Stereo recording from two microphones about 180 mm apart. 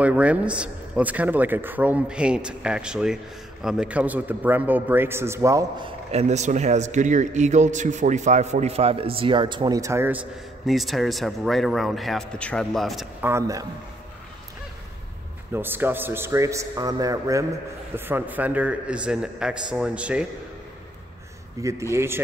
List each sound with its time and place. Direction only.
0.0 s a man's voice: 5° right (ahead or behind)
10.7 s speech: centre (ahead or behind)
13.2 s a man's voice: 15° right (ahead or behind)
15.5 s a man's voice: 10° right (ahead or behind)
21.6 s a man's voice: 20° right (ahead or behind)